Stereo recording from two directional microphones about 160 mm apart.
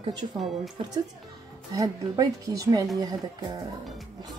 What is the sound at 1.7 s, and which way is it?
Speech, 20° right (ahead or behind).